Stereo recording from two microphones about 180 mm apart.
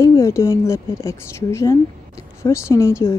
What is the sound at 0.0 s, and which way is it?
A woman's voice, 15° left (ahead or behind).